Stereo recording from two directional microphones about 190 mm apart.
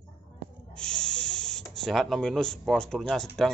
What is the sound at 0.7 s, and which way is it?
Spray, 5° left (ahead or behind).